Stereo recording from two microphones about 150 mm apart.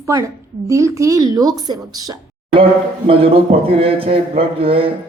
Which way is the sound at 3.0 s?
40° right (ahead or behind).